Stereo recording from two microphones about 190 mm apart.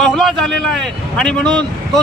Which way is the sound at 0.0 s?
Centre (ahead or behind).